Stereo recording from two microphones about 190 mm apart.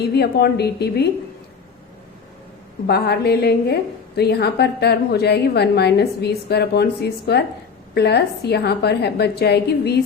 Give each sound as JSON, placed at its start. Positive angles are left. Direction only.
{"t": 0.0, "sound": "a woman's voice", "side_deg": 60}
{"t": 2.8, "sound": "a woman's voice", "side_deg": 60}